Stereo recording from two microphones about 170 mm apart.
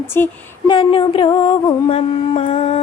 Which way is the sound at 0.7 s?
30° left (ahead or behind).